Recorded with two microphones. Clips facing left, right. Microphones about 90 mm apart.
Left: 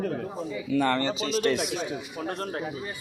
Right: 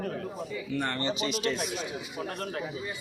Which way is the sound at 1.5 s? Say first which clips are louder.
Left 5 dB; 90° left.